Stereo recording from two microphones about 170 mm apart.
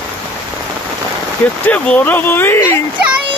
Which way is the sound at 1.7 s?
10° left (ahead or behind).